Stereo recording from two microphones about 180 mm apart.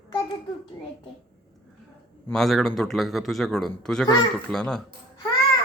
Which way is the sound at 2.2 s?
Centre (ahead or behind).